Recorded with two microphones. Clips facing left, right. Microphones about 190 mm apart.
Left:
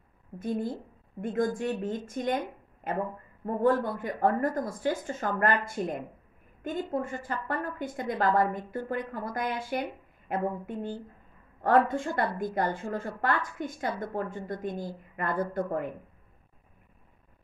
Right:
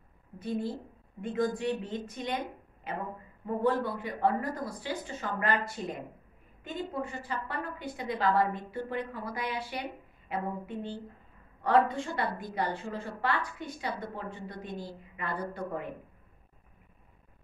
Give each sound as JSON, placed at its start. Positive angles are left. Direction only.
{"t": 0.4, "sound": "a woman's voice", "side_deg": 50}